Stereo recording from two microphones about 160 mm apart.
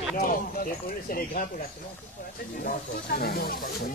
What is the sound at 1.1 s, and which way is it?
Speech, 65° left (ahead or behind).